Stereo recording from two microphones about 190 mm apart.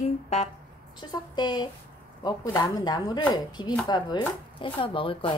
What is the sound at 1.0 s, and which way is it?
Speech, 20° left (ahead or behind).